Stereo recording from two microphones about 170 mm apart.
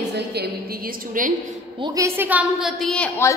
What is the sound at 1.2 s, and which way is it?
Speech, 50° right (ahead or behind).